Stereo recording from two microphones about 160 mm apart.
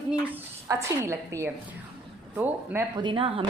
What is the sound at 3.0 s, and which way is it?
Speech, 30° right (ahead or behind).